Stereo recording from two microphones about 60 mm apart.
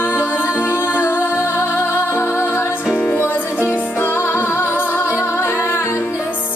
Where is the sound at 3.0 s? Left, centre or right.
Left.